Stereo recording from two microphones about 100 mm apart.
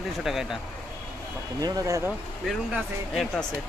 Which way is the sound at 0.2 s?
5° right (ahead or behind).